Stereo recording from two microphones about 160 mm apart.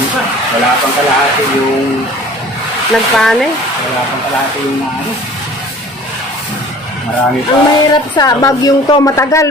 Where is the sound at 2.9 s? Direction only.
5° left (ahead or behind).